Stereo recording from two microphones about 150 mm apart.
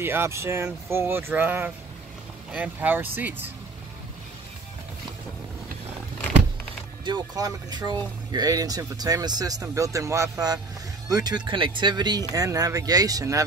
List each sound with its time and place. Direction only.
0.0 s speech: 15° right (ahead or behind)
7.1 s speech: 25° right (ahead or behind)